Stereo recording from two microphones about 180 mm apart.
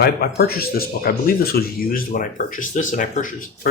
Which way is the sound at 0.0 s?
60° left (ahead or behind).